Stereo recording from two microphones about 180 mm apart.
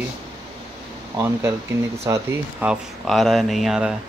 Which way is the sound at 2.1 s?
15° right (ahead or behind).